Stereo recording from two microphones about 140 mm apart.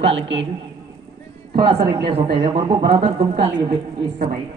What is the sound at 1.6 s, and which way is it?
A woman's voice, 35° right (ahead or behind).